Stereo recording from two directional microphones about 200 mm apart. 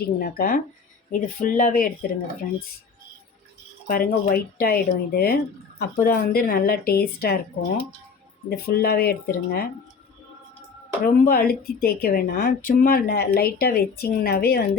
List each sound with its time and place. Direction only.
0.0 s speech: 50° left (ahead or behind)
3.8 s speech: 45° left (ahead or behind)
8.4 s speech: 50° left (ahead or behind)
11.0 s speech: 45° left (ahead or behind)